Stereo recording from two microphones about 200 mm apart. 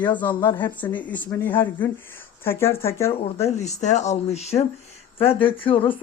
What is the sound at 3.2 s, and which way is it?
Speech, 30° left (ahead or behind).